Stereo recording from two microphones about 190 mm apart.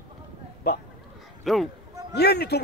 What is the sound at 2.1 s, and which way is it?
Speech, 60° left (ahead or behind).